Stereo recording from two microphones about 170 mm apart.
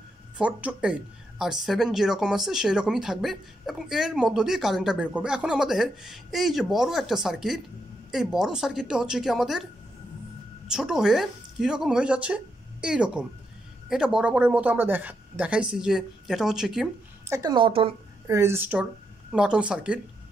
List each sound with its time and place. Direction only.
0.4 s speech: 5° right (ahead or behind)
10.7 s speech: 5° right (ahead or behind)
17.3 s a woman's voice: 20° right (ahead or behind)
18.2 s speech: 15° right (ahead or behind)